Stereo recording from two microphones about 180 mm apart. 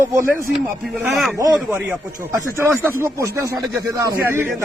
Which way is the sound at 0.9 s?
Centre (ahead or behind).